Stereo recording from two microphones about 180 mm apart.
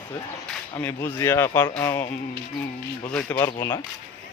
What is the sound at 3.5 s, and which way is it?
Speech, 25° left (ahead or behind).